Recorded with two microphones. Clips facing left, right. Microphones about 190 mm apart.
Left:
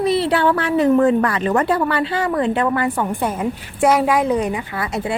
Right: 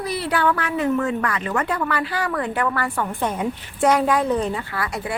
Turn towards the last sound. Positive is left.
turn(degrees=25)  # may be behind; listen again after turning